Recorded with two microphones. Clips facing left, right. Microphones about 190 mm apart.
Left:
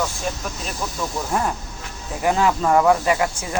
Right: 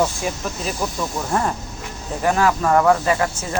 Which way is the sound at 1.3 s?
Centre (ahead or behind).